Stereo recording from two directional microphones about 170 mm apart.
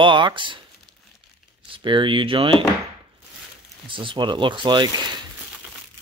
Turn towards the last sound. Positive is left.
turn(degrees=-25)  # may be behind; listen again after turning